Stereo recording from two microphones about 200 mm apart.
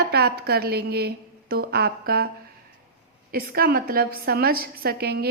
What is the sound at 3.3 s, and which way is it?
A woman's voice, 50° right (ahead or behind).